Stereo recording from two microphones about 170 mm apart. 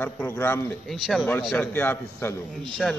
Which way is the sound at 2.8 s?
5° left (ahead or behind).